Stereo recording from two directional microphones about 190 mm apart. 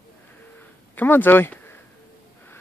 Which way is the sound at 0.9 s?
10° left (ahead or behind).